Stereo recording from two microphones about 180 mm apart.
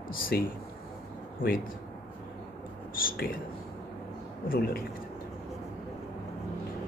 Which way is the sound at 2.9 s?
50° left (ahead or behind).